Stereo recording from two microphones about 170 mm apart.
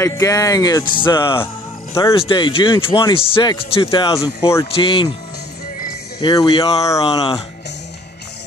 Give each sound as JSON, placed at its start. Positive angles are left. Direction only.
{"t": 0.0, "sound": "speech", "side_deg": 20}
{"t": 6.2, "sound": "speech", "side_deg": 25}
{"t": 7.2, "sound": "speech", "side_deg": 30}